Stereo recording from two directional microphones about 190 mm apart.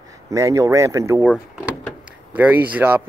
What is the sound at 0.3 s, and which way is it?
Speech, 15° right (ahead or behind).